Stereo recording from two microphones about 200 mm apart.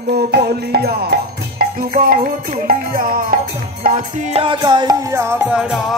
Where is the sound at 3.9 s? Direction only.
25° right (ahead or behind).